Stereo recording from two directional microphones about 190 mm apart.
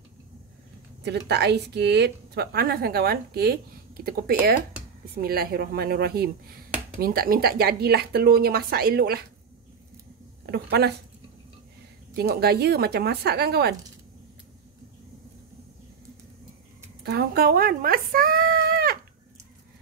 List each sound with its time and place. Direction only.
1.0 s a woman's voice: 65° right (ahead or behind)
10.4 s speech: 55° right (ahead or behind)
12.2 s speech: 55° right (ahead or behind)
17.0 s speech: 55° right (ahead or behind)